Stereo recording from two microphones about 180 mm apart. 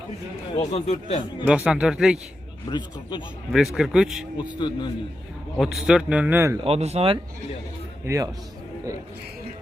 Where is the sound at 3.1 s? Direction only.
25° left (ahead or behind).